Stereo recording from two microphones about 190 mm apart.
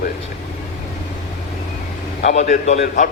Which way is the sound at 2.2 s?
40° left (ahead or behind).